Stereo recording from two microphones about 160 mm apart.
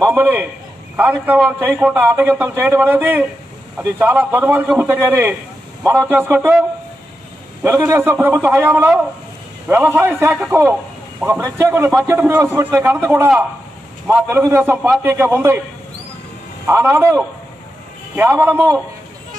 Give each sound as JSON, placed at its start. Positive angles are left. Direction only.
{"t": 0.0, "sound": "a man's voice", "side_deg": -10}
{"t": 7.6, "sound": "a man's voice", "side_deg": -15}
{"t": 16.6, "sound": "a man's voice", "side_deg": -15}